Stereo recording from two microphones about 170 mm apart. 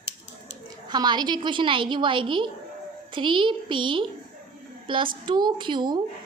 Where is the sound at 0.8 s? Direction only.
25° right (ahead or behind).